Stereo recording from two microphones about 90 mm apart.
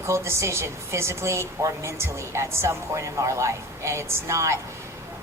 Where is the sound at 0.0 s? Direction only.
30° right (ahead or behind).